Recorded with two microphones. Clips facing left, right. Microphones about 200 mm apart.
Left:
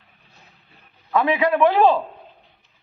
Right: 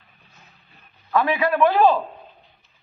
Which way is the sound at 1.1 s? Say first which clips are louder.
Left 1 dB; 20° left (ahead or behind).